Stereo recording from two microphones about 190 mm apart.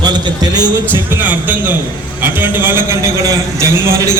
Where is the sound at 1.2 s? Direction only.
10° right (ahead or behind).